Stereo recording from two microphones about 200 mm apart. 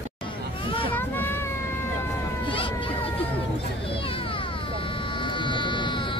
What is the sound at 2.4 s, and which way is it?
Cat, 25° left (ahead or behind).